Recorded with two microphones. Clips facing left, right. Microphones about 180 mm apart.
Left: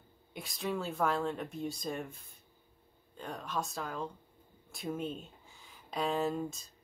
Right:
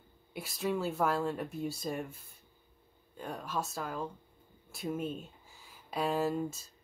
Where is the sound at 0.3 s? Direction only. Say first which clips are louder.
Right 3 dB; 5° right (ahead or behind).